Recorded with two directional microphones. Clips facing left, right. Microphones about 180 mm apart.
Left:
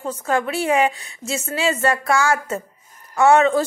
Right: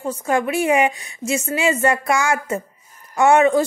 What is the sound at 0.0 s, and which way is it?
Speech, 15° right (ahead or behind).